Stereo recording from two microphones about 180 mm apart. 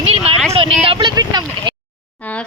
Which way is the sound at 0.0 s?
35° right (ahead or behind).